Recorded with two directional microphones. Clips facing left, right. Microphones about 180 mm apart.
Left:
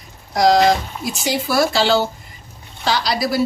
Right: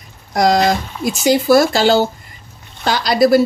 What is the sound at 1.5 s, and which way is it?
Speech, 45° right (ahead or behind).